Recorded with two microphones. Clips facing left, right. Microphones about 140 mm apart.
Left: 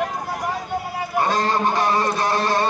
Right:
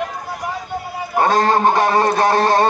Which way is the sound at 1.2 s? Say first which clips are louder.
Right 6 dB; 55° right (ahead or behind).